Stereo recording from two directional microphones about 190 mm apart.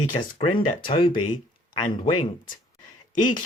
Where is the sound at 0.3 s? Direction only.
25° left (ahead or behind).